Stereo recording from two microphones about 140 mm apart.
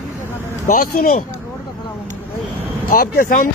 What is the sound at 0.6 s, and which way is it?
Speech, 85° left.